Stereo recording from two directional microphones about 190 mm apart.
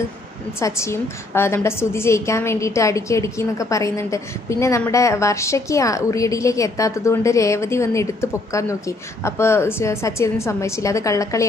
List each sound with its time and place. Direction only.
0.6 s a woman's voice: 15° left (ahead or behind)